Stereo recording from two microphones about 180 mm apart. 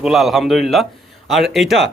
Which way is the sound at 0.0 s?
Centre (ahead or behind).